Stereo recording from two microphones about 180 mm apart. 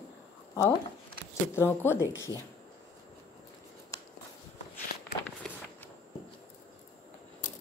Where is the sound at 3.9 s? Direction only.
20° left (ahead or behind).